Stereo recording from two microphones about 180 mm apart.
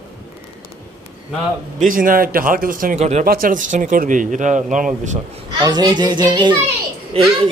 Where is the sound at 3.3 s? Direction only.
50° right (ahead or behind).